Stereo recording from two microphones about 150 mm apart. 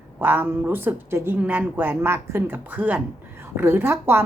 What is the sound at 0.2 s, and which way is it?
A woman's voice, 15° right (ahead or behind).